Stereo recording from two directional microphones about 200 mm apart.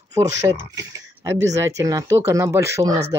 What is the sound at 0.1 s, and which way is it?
Speech, 15° right (ahead or behind).